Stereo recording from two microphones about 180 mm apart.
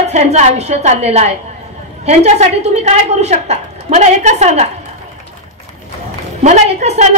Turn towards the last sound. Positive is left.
turn(degrees=-40)  # may be behind; listen again after turning